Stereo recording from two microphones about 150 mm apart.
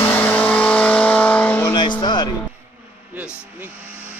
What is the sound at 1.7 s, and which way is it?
Music, 30° left (ahead or behind).